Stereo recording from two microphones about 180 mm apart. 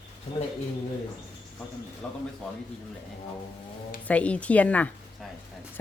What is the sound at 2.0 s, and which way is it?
Speech, 5° left (ahead or behind).